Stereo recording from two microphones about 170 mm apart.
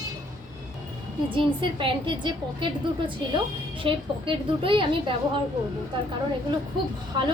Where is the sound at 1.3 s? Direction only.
30° right (ahead or behind).